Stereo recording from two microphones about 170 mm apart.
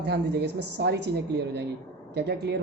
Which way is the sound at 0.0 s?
80° right.